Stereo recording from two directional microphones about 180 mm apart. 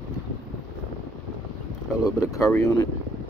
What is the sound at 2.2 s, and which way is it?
Speech, 15° left (ahead or behind).